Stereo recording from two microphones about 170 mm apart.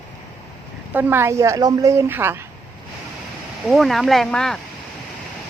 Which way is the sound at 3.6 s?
Centre (ahead or behind).